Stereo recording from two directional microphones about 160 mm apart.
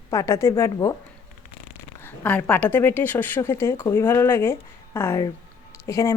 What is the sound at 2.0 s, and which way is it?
Speech, 10° left (ahead or behind).